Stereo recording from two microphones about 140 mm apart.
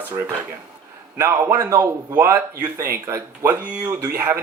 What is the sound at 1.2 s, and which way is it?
Speech, 20° right (ahead or behind).